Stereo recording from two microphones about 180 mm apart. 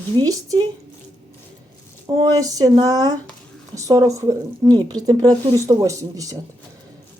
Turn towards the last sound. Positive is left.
turn(degrees=-20)  # may be behind; listen again after turning